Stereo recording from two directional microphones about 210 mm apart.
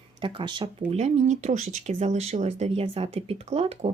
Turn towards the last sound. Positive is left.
turn(degrees=-30)  # may be behind; listen again after turning